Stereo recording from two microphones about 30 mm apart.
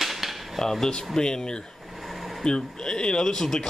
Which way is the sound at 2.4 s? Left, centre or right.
Left.